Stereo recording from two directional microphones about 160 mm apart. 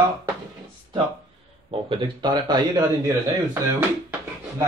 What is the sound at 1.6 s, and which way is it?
A man's voice, 30° right (ahead or behind).